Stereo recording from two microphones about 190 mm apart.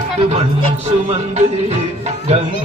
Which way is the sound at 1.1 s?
35° right (ahead or behind).